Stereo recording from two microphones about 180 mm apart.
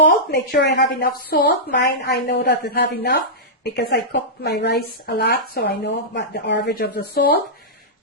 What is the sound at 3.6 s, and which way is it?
Speech, 70° left (ahead or behind).